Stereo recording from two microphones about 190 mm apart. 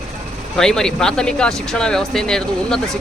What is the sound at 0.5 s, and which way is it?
Speech, 5° left (ahead or behind).